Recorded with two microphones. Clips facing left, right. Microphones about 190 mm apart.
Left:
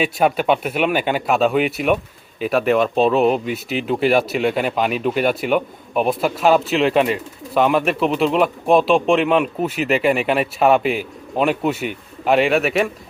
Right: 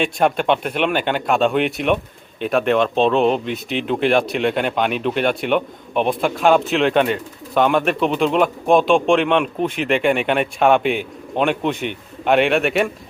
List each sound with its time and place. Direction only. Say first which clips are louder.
0.0 s speech: even; 5° left (ahead or behind)